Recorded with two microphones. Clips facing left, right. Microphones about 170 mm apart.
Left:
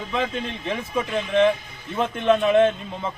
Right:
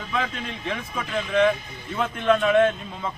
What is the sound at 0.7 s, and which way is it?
A man's voice, 30° left (ahead or behind).